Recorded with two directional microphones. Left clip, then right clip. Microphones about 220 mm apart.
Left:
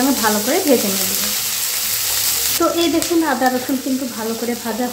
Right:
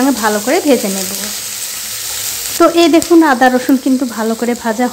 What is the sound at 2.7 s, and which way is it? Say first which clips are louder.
Stir: right 9 dB; 40° right (ahead or behind).